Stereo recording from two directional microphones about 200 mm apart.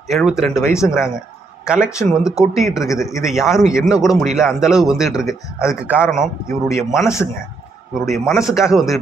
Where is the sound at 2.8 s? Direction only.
15° left (ahead or behind).